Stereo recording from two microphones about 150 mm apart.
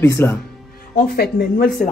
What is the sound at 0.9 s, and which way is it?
Speech, 85° left.